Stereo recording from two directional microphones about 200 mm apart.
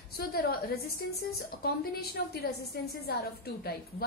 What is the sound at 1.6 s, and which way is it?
A woman's voice, 50° left (ahead or behind).